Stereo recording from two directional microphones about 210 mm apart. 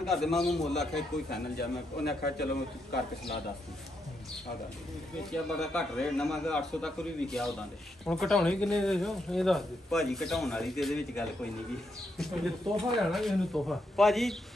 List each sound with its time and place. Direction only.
0.0 s speech: centre (ahead or behind)
1.3 s a man's voice: 50° left (ahead or behind)
5.2 s speech: centre (ahead or behind)